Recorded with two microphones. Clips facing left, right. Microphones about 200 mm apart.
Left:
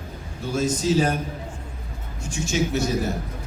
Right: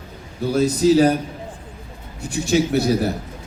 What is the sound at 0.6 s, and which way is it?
Speech, 35° right (ahead or behind).